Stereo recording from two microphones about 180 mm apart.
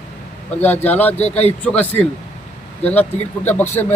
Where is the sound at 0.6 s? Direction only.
10° left (ahead or behind).